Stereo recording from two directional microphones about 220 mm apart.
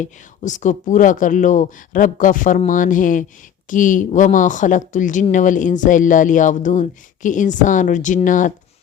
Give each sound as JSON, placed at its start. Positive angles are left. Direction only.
{"t": 0.0, "sound": "speech", "side_deg": 35}